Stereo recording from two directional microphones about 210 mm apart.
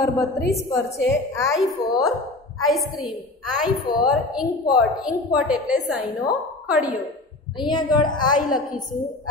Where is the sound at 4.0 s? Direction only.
5° right (ahead or behind).